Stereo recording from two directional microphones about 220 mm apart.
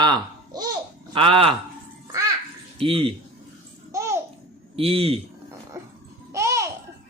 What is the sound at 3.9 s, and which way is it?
Babbling, 15° right (ahead or behind).